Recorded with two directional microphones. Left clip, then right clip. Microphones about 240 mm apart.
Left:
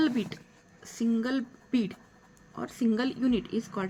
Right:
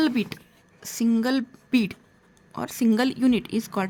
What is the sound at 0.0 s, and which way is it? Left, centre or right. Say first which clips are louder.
A woman's voice: right 4 dB; right.